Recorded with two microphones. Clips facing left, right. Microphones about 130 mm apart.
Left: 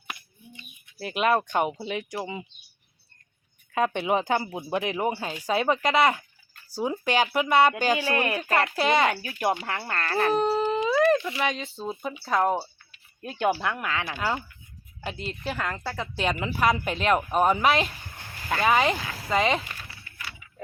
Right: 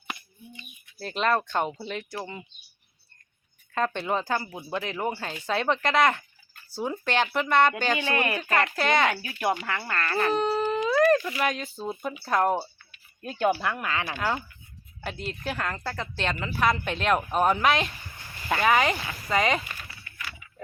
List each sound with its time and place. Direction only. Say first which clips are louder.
0.9 s speech: left 2 dB; 10° left (ahead or behind)
3.8 s speech: left 3 dB; 15° left (ahead or behind)
9.4 s speech: left 1 dB; 25° left (ahead or behind)
10.2 s a woman's voice: left 2 dB; 5° left (ahead or behind)
13.2 s speech: even; 10° left (ahead or behind)
13.9 s a woman's voice: even; 10° right (ahead or behind)